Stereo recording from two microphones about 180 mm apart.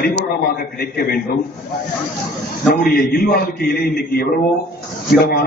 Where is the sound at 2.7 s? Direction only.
55° left (ahead or behind).